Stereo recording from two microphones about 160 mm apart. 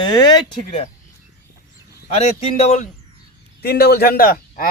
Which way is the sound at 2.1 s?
45° left (ahead or behind).